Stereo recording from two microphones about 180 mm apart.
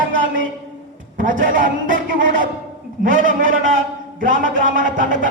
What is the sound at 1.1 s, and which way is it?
A man's voice, 50° right (ahead or behind).